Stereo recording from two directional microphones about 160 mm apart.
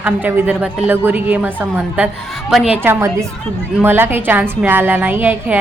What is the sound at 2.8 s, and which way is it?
A woman's voice, 15° right (ahead or behind).